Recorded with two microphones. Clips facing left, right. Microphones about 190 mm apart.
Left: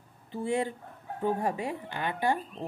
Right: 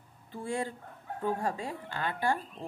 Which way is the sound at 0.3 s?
20° left (ahead or behind).